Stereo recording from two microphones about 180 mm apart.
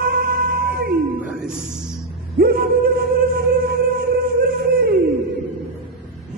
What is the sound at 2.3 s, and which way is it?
Music, 60° right (ahead or behind).